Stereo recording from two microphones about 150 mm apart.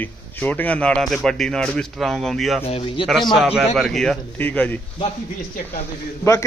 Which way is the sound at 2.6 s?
35° left (ahead or behind).